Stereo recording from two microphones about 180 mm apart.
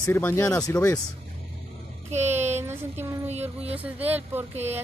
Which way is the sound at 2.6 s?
15° right (ahead or behind).